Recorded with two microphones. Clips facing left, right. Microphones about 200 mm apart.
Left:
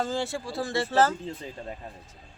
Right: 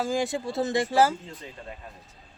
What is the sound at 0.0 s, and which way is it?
Speech, 15° right (ahead or behind).